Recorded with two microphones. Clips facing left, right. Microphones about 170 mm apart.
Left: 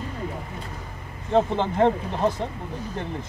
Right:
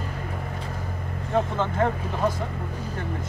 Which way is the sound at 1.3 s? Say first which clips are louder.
Left 3 dB; 25° left (ahead or behind).